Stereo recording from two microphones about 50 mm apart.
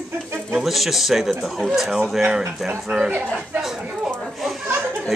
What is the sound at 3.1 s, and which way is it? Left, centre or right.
Speech, right.